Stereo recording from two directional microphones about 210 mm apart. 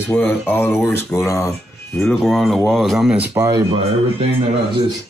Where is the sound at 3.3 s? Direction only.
15° right (ahead or behind).